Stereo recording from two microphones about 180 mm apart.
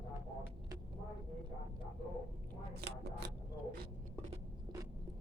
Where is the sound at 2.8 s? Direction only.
65° right (ahead or behind).